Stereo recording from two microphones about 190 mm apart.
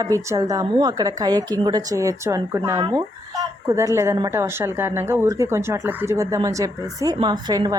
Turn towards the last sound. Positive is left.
turn(degrees=-20)  # may be behind; listen again after turning